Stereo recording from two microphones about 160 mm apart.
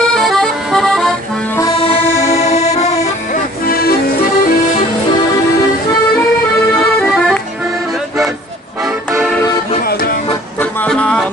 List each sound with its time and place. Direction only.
0.1 s accordion: centre (ahead or behind)
2.2 s music: 45° left (ahead or behind)
3.6 s music: 70° left (ahead or behind)
7.0 s accordion: centre (ahead or behind)
10.6 s music: 10° left (ahead or behind)